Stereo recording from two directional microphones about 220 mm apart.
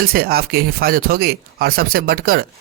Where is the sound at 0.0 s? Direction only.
40° right (ahead or behind).